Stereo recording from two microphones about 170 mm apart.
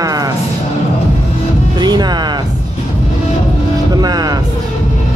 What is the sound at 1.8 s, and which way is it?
Speech, 25° right (ahead or behind).